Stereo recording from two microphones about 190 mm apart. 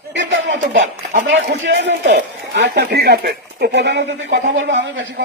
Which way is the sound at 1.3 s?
65° right (ahead or behind).